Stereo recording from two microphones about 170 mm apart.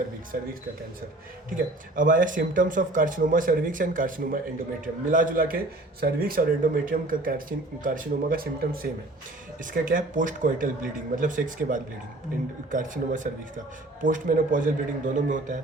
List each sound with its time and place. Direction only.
0.3 s speech: 60° right (ahead or behind)